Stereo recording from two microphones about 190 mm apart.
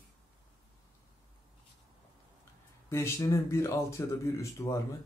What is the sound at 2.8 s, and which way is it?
Speech, 15° left (ahead or behind).